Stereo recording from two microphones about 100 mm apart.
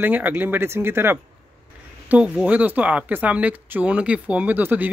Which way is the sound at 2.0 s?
10° right (ahead or behind).